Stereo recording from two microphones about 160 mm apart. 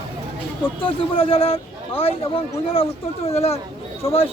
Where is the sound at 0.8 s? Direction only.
35° left (ahead or behind).